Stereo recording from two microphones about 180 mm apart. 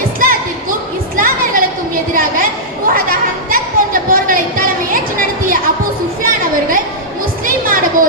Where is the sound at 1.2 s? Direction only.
50° right (ahead or behind).